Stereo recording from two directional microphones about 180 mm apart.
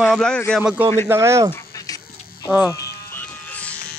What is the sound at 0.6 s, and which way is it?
Speech, 10° right (ahead or behind).